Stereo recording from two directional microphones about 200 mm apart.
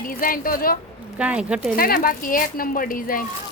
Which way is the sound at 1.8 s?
45° left (ahead or behind).